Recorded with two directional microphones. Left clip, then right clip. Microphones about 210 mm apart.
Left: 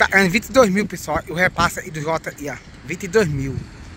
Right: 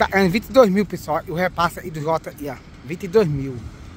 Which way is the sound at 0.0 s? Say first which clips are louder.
Left 3 dB; 15° right (ahead or behind).